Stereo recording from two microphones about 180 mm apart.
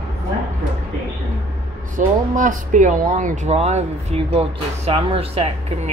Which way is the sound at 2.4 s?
45° right (ahead or behind).